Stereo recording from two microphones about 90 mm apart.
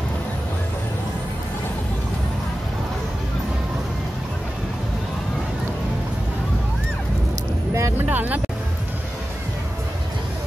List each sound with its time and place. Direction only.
8.0 s speech: 20° right (ahead or behind)